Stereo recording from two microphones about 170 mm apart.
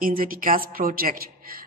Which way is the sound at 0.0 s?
55° right (ahead or behind).